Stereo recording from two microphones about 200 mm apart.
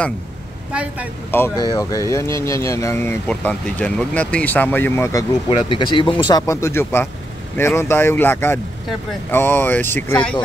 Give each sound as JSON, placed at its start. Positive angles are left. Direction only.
{"t": 1.3, "sound": "speech", "side_deg": 10}
{"t": 5.7, "sound": "speech", "side_deg": 25}